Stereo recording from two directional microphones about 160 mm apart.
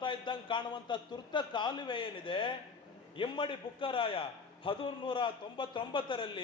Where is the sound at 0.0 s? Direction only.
30° left (ahead or behind).